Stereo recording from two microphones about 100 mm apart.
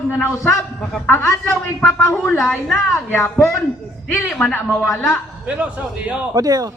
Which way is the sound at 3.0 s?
20° left (ahead or behind).